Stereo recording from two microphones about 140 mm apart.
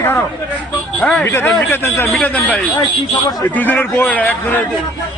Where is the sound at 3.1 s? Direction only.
30° left (ahead or behind).